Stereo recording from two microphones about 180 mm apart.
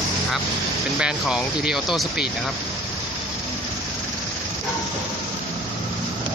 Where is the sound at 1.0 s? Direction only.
5° right (ahead or behind).